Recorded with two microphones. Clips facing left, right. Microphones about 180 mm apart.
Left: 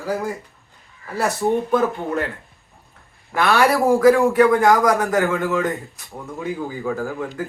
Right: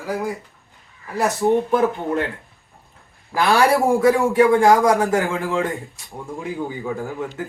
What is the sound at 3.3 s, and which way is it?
A man's voice, 30° right (ahead or behind).